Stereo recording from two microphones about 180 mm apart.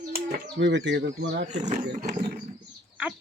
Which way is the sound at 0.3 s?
75° right (ahead or behind).